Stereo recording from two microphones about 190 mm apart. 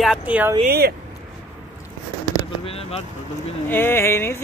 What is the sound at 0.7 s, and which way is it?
Speech, 55° right (ahead or behind).